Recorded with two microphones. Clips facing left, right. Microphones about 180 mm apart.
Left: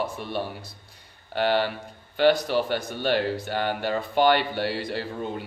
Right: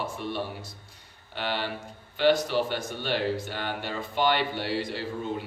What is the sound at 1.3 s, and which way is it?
Speech, 45° left (ahead or behind).